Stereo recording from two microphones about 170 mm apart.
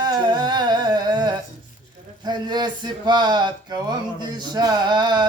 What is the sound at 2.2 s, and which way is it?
Music, 25° right (ahead or behind).